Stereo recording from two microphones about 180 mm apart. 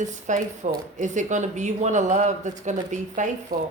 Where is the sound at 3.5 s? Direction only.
55° right (ahead or behind).